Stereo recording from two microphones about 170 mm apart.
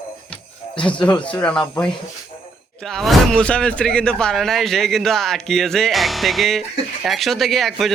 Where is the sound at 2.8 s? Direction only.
Centre (ahead or behind).